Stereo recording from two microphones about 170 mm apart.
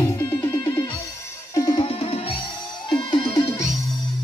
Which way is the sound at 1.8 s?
35° left (ahead or behind).